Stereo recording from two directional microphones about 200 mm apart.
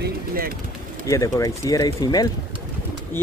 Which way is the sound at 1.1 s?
15° left (ahead or behind).